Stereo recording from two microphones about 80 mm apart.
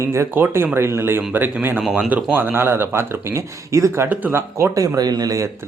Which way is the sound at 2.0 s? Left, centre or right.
Centre.